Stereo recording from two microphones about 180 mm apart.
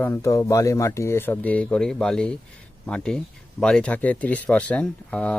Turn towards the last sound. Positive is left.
turn(degrees=5)  # may be behind; listen again after turning